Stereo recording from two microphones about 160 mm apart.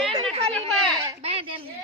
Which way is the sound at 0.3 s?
40° right (ahead or behind).